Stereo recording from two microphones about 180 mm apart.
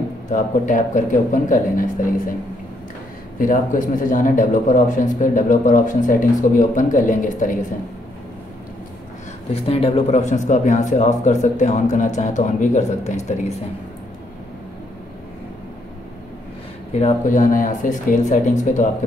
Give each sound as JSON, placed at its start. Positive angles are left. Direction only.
{"t": 0.3, "sound": "speech", "side_deg": 45}
{"t": 3.3, "sound": "speech", "side_deg": 45}
{"t": 9.5, "sound": "speech", "side_deg": 35}
{"t": 16.9, "sound": "speech", "side_deg": 40}